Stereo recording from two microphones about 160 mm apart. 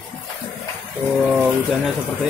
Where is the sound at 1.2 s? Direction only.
10° right (ahead or behind).